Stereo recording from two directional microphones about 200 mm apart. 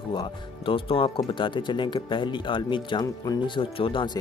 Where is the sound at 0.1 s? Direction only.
25° left (ahead or behind).